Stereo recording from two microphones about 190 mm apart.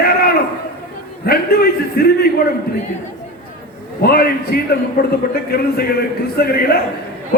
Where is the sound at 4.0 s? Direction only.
55° left (ahead or behind).